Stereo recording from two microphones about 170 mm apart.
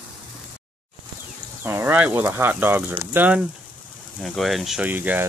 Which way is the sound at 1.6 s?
15° right (ahead or behind).